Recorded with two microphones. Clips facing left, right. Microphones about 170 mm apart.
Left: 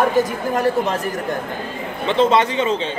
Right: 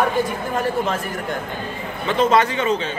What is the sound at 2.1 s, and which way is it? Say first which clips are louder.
Speech: left 1 dB; 25° left (ahead or behind).